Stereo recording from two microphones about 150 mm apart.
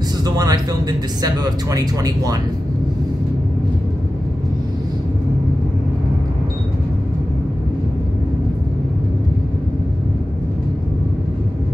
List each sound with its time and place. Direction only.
0.2 s speech: 25° right (ahead or behind)